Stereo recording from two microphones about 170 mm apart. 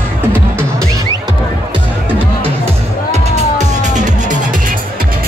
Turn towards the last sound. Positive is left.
turn(degrees=-45)  # may be behind; listen again after turning